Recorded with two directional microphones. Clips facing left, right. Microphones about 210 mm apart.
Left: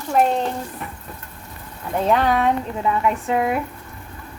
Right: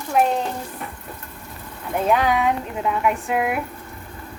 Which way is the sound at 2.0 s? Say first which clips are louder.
Left 1 dB; 5° right (ahead or behind).